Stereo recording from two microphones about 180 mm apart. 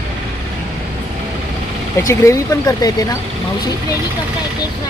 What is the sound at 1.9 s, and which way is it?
Speech, 15° left (ahead or behind).